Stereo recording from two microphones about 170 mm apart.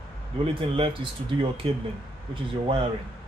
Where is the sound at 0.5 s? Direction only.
35° right (ahead or behind).